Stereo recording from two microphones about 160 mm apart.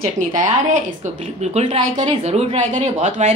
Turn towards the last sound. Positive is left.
turn(degrees=-45)  # may be behind; listen again after turning